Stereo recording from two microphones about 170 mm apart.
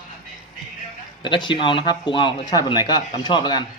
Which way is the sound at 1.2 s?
25° left (ahead or behind).